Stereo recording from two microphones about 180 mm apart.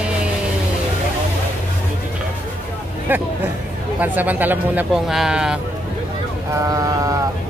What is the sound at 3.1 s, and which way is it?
Speech, 10° right (ahead or behind).